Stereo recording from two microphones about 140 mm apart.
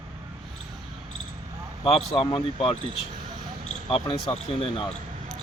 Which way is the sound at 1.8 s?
45° left (ahead or behind).